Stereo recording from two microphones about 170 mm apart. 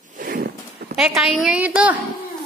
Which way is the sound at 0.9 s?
5° right (ahead or behind).